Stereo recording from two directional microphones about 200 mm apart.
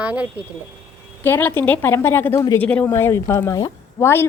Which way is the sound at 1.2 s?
10° left (ahead or behind).